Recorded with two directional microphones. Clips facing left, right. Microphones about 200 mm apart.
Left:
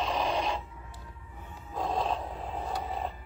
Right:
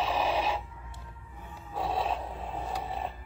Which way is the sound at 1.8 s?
5° right (ahead or behind).